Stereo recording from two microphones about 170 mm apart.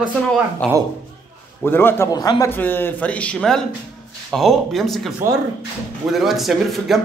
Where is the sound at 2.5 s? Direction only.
10° left (ahead or behind).